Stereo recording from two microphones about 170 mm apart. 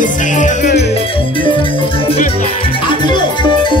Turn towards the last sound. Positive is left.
turn(degrees=25)  # may be behind; listen again after turning